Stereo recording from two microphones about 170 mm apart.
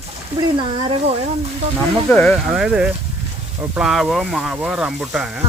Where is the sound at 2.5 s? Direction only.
5° right (ahead or behind).